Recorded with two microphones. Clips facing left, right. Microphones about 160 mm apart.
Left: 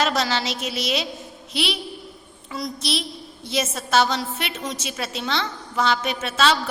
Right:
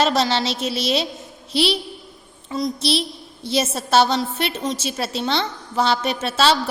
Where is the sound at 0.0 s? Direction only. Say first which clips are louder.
Right 4 dB; 30° right (ahead or behind).